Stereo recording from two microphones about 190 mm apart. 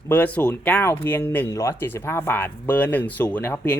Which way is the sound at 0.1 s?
10° left (ahead or behind).